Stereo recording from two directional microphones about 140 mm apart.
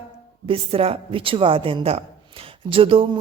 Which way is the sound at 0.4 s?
40° right (ahead or behind).